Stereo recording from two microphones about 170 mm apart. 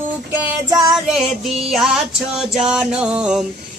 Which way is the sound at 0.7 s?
20° right (ahead or behind).